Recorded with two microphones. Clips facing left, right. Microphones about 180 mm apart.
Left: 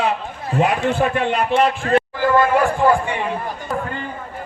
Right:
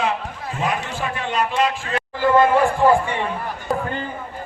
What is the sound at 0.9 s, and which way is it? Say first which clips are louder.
A man's voice: left 7 dB; 55° left (ahead or behind).